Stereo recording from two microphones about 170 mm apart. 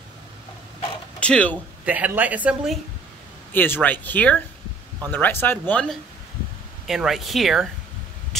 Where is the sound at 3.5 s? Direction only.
10° left (ahead or behind).